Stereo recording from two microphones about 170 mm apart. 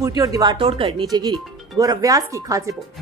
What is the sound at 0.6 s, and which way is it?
Speech, 30° right (ahead or behind).